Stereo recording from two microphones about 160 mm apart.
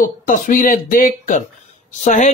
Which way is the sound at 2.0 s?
50° left (ahead or behind).